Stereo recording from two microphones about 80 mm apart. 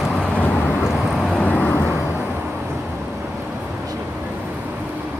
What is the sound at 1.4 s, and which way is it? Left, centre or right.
Vehicle, centre.